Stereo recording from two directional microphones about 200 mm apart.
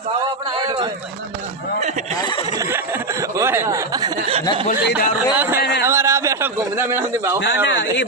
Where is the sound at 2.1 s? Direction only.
20° left (ahead or behind).